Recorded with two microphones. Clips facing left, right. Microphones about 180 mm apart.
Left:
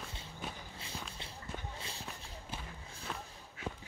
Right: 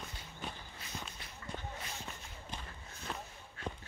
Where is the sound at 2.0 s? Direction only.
10° left (ahead or behind).